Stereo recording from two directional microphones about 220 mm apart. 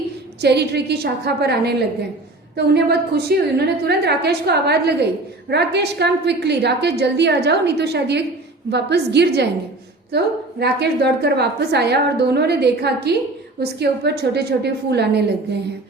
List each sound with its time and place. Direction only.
0.4 s a woman's voice: 50° right (ahead or behind)
10.6 s a woman's voice: 50° right (ahead or behind)